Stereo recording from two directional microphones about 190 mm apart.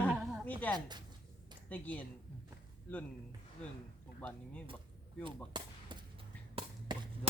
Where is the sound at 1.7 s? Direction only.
10° left (ahead or behind).